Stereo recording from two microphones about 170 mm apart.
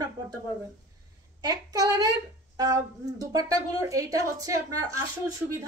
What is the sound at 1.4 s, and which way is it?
A woman's voice, 20° right (ahead or behind).